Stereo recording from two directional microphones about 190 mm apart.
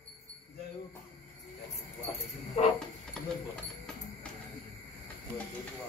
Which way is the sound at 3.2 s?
5° left (ahead or behind).